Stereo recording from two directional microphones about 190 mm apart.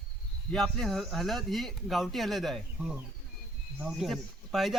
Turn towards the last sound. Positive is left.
turn(degrees=0)  # may be behind; listen again after turning